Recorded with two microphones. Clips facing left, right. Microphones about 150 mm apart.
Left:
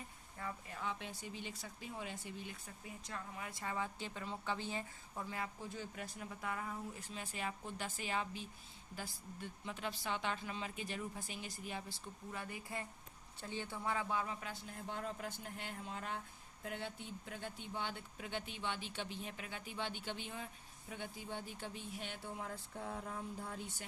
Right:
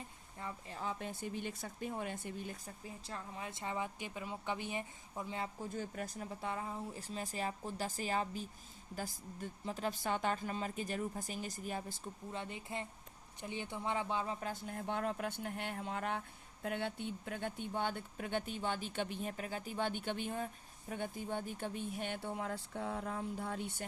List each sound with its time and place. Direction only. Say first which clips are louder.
0.3 s a woman's voice: right 1 dB; 25° right (ahead or behind)
0.8 s speech: right 5 dB; 40° right (ahead or behind); by 5.5 s 20° right (ahead or behind)
5.6 s speech: right 5 dB; 45° right (ahead or behind)
6.4 s speech: right 2 dB; 25° right (ahead or behind); by 12.1 s 45° right (ahead or behind)
12.3 s speech: right 2 dB; 25° right (ahead or behind)
14.4 s speech: right 6 dB; 50° right (ahead or behind); by 23.8 s 65° right (ahead or behind)